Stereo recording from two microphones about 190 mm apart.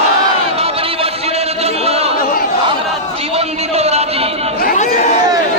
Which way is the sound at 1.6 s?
30° right (ahead or behind).